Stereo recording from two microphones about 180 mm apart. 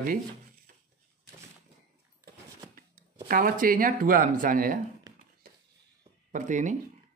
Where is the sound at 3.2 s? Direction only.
50° right (ahead or behind).